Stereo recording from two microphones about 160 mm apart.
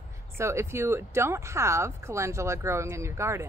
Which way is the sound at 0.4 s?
15° right (ahead or behind).